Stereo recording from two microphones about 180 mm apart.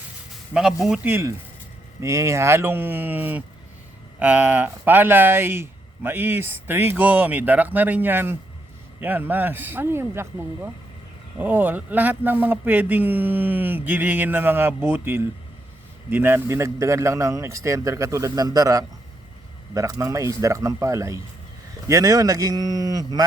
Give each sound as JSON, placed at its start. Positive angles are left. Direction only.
{"t": 0.5, "sound": "speech", "side_deg": -5}